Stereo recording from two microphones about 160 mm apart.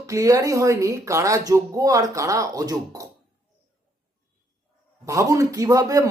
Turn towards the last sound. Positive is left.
turn(degrees=-25)  # may be behind; listen again after turning